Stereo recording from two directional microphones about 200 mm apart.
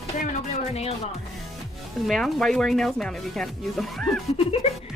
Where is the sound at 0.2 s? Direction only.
35° left (ahead or behind).